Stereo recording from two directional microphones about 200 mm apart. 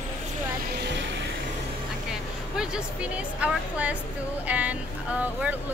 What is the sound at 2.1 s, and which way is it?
Speech, 5° right (ahead or behind).